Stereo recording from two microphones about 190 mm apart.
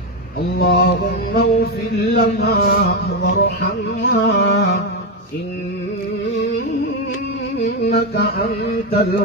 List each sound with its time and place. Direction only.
0.6 s mantra: 55° left (ahead or behind)
2.1 s a sound: 55° left (ahead or behind)
7.6 s music: 60° left (ahead or behind)